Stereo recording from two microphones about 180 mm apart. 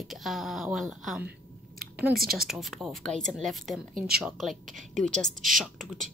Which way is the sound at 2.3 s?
Centre (ahead or behind).